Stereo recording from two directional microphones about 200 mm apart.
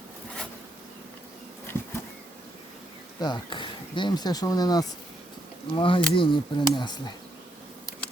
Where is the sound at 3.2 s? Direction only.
20° left (ahead or behind).